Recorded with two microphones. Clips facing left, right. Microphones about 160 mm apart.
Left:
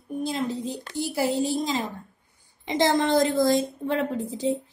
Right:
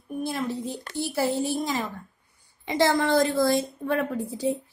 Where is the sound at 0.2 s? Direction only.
15° left (ahead or behind).